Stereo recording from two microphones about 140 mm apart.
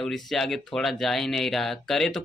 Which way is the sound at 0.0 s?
Centre (ahead or behind).